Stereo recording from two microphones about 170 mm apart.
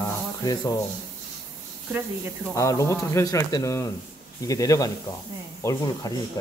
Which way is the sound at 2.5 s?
20° left (ahead or behind).